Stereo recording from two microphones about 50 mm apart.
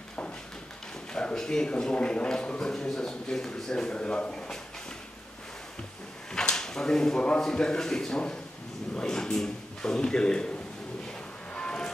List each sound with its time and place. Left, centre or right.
1.1 s a man's voice: centre
6.3 s a man's voice: centre
11.5 s vehicle: centre